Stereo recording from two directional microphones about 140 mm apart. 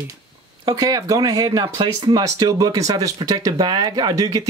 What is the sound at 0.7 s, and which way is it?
Speech, 25° right (ahead or behind).